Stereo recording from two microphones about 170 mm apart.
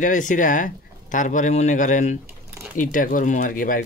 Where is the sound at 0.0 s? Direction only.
50° left (ahead or behind).